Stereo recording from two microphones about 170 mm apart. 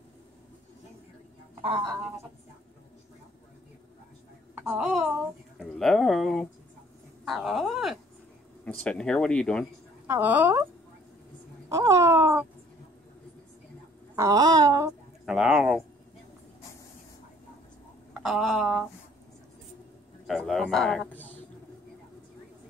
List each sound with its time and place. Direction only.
4.6 s a woman's voice: 5° right (ahead or behind)
10.0 s speech: 10° right (ahead or behind)
11.7 s speech: 20° right (ahead or behind)
14.1 s a sound: 20° right (ahead or behind)
15.2 s speech: 5° right (ahead or behind)
18.2 s speech: centre (ahead or behind)
20.2 s speech: centre (ahead or behind)